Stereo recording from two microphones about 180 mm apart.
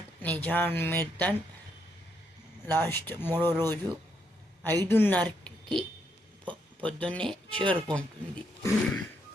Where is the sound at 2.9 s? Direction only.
10° left (ahead or behind).